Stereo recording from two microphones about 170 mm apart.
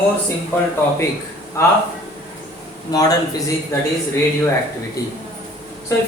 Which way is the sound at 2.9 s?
20° left (ahead or behind).